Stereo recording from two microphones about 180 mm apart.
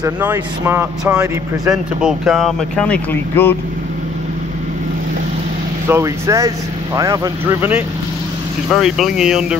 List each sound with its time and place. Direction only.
0.0 s speech: 10° right (ahead or behind)
1.7 s speech: 5° right (ahead or behind)
5.9 s speech: 15° right (ahead or behind)
8.7 s speech: centre (ahead or behind)